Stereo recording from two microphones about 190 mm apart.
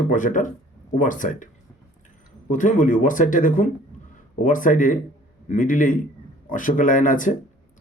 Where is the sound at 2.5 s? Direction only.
45° left (ahead or behind).